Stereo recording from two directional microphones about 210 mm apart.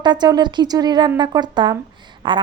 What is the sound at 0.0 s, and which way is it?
Speech, 20° right (ahead or behind).